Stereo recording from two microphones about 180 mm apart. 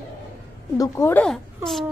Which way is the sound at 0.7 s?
15° left (ahead or behind).